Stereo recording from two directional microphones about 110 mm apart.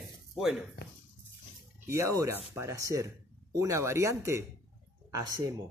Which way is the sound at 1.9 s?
25° right (ahead or behind).